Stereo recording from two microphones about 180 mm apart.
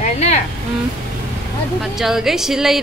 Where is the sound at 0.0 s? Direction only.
40° left (ahead or behind).